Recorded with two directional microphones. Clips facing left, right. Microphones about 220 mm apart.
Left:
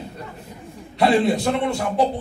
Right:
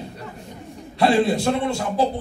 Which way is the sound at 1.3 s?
25° right (ahead or behind).